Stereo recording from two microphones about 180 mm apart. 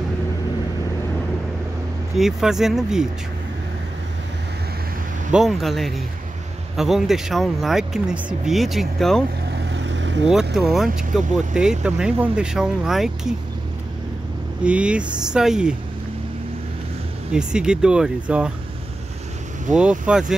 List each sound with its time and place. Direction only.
2.1 s speech: centre (ahead or behind)
5.3 s speech: centre (ahead or behind)
9.5 s vehicle: 75° right (ahead or behind)
10.5 s speech: centre (ahead or behind)
14.6 s speech: 5° right (ahead or behind)
17.3 s speech: 5° right (ahead or behind)
19.7 s speech: 5° right (ahead or behind)